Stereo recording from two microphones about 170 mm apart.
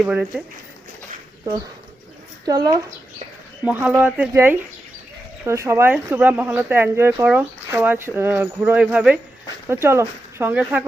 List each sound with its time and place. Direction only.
0.0 s speech: 5° right (ahead or behind)
2.5 s speech: 20° right (ahead or behind)
3.6 s speech: 10° right (ahead or behind)